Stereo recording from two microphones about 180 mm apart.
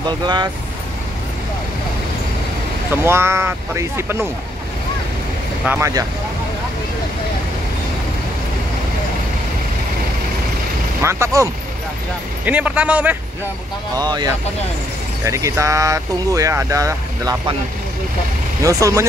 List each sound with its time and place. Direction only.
3.0 s speech: 15° right (ahead or behind)
5.7 s speech: 15° right (ahead or behind)
11.0 s speech: 15° right (ahead or behind)
12.4 s speech: 5° right (ahead or behind)
13.9 s speech: 20° right (ahead or behind)
18.6 s speech: 20° right (ahead or behind)